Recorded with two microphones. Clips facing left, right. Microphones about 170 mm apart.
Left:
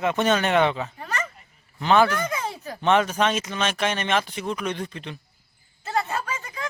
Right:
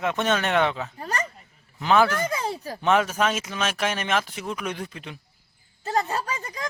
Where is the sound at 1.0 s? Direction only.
40° right (ahead or behind).